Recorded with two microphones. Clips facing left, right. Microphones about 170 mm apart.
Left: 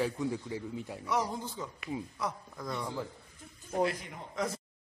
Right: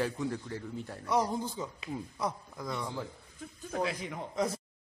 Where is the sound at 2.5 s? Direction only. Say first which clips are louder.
Even; centre (ahead or behind).